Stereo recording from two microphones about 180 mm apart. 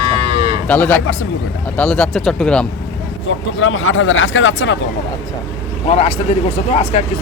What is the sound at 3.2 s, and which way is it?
Speech, 90° left.